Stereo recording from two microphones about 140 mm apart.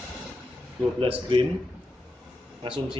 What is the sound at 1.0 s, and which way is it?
Speech, 40° right (ahead or behind).